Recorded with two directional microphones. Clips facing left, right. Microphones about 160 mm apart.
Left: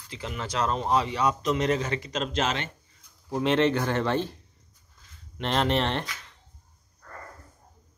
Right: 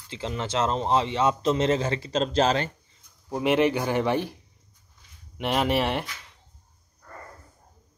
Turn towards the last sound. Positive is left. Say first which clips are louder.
# right 1 dB
turn(degrees=-10)  # may be behind; listen again after turning